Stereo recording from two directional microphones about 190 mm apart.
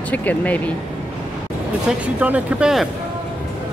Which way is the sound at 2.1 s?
5° right (ahead or behind).